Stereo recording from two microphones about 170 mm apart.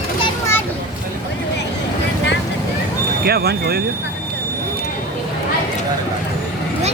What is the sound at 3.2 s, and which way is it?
Speech, 65° right (ahead or behind).